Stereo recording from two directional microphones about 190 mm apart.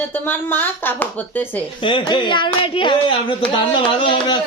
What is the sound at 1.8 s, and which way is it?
Speech, 25° left (ahead or behind).